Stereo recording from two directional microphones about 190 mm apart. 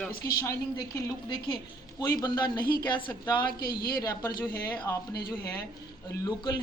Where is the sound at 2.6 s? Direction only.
50° left (ahead or behind).